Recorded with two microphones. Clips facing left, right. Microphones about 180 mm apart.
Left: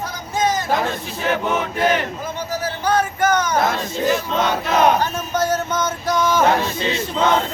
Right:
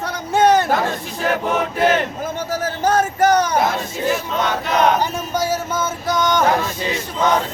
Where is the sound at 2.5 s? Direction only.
45° right (ahead or behind).